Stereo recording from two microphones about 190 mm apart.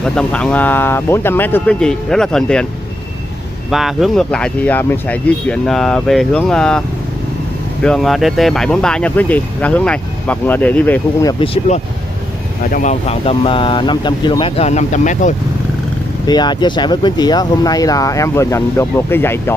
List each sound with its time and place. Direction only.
0.0 s speech: 5° left (ahead or behind)
3.7 s speech: centre (ahead or behind)
7.8 s speech: centre (ahead or behind)
11.4 s speech: 35° left (ahead or behind)
16.3 s speech: 25° left (ahead or behind)